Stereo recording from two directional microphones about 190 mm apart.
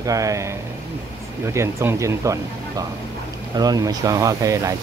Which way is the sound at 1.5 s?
15° right (ahead or behind).